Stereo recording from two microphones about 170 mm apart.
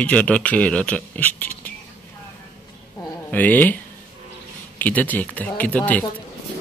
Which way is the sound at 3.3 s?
10° left (ahead or behind).